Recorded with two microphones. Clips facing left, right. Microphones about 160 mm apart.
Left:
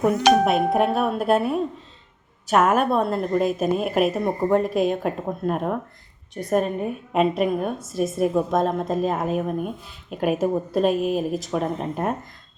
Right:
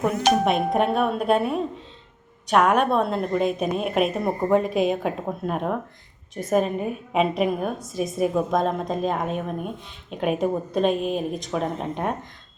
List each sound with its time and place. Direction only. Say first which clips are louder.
0.4 s a woman's voice: left 2 dB; 5° left (ahead or behind)